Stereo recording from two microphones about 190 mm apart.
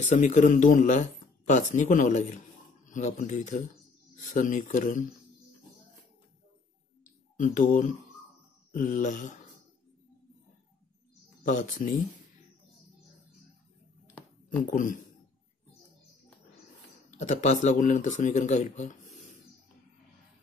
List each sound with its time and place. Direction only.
0.0 s speech: 40° left (ahead or behind)
7.3 s speech: 40° left (ahead or behind)
11.4 s speech: 45° left (ahead or behind)
14.7 s speech: 45° left (ahead or behind)
17.2 s speech: 40° left (ahead or behind)